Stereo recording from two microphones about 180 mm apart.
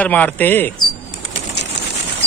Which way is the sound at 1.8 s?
70° left (ahead or behind).